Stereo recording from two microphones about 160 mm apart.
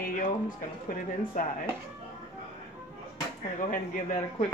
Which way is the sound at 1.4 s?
55° left (ahead or behind).